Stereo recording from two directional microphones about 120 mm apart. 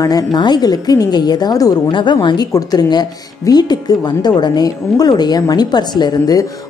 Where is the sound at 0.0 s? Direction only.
35° left (ahead or behind).